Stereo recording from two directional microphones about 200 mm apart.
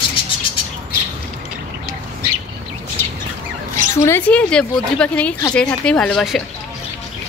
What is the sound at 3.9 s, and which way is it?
A woman's voice, 15° left (ahead or behind).